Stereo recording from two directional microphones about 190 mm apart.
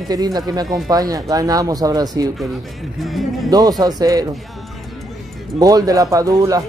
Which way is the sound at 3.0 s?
Centre (ahead or behind).